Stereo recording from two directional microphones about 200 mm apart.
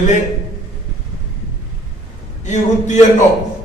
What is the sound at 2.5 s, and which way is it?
Speech, 35° left (ahead or behind).